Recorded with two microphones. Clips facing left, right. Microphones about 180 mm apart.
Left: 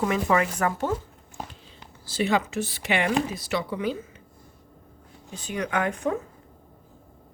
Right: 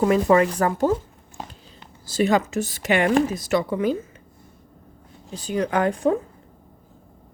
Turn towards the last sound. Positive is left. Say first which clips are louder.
# right 6 dB
turn(degrees=-35)  # may be behind; listen again after turning